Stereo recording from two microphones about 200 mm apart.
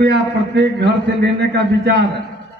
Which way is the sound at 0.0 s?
55° right (ahead or behind).